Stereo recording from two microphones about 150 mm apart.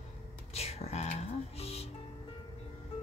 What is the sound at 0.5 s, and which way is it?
Music, 45° left (ahead or behind).